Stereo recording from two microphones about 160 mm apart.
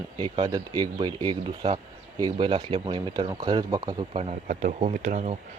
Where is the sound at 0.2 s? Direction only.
25° right (ahead or behind).